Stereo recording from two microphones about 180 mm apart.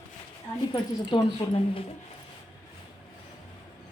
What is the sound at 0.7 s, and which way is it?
A woman's voice, 25° left (ahead or behind).